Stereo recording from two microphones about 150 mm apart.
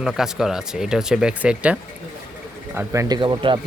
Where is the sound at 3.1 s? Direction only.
30° right (ahead or behind).